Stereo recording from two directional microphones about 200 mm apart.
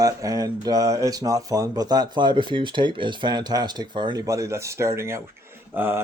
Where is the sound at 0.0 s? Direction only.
15° right (ahead or behind).